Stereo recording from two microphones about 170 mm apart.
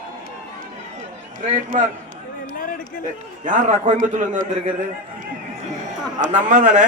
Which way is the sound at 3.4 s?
45° right (ahead or behind).